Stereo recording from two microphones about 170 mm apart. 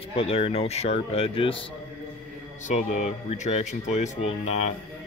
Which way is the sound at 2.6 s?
45° left (ahead or behind).